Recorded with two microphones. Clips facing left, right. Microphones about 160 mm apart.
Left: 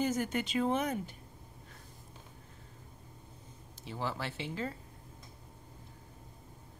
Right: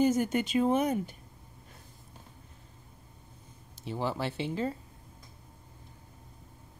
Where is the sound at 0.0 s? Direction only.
15° right (ahead or behind).